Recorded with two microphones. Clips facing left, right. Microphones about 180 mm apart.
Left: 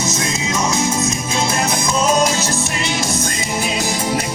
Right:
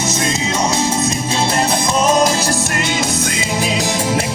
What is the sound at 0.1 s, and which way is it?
Music, 30° right (ahead or behind).